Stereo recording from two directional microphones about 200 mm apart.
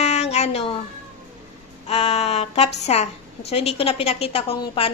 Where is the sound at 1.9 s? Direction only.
35° left (ahead or behind).